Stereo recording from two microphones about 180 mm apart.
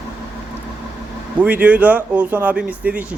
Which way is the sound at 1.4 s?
10° right (ahead or behind).